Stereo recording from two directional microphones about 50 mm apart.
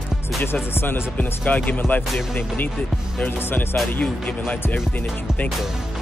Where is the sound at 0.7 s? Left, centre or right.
Left.